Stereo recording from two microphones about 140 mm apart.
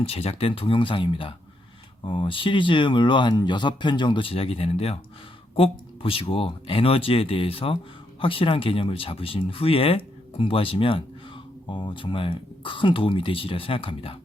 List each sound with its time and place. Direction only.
0.0 s speech: 45° left (ahead or behind)